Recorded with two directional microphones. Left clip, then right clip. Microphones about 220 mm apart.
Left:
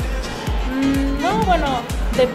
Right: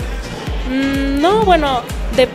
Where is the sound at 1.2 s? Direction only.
50° right (ahead or behind).